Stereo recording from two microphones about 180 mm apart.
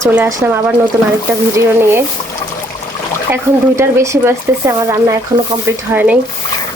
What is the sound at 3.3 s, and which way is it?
Speech, 15° right (ahead or behind).